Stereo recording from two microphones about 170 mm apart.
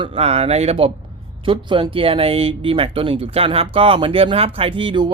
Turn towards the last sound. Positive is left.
turn(degrees=-30)  # may be behind; listen again after turning